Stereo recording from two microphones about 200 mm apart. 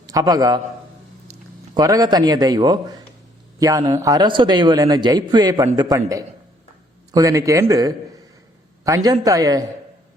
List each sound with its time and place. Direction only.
0.0 s a man's voice: 20° right (ahead or behind)
1.7 s a man's voice: 20° right (ahead or behind)